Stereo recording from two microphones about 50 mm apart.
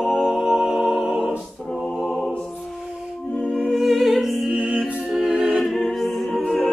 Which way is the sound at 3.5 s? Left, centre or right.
Centre.